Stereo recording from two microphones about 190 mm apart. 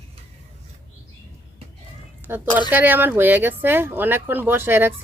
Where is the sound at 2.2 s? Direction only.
10° left (ahead or behind).